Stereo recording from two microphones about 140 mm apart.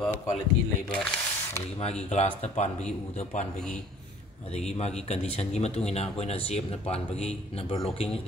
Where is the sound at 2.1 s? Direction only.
50° left (ahead or behind).